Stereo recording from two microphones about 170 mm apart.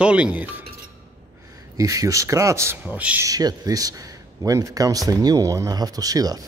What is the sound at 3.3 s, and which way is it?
A man's voice, 20° right (ahead or behind).